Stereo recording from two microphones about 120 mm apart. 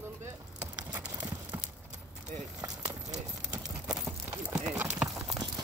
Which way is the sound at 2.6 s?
30° right (ahead or behind).